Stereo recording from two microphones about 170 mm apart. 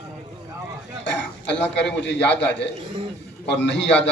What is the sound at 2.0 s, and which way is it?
Speech, 90° left.